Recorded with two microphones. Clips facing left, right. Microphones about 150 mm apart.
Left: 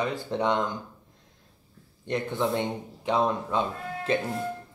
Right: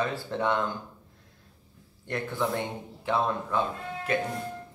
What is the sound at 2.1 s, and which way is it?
Speech, 20° left (ahead or behind).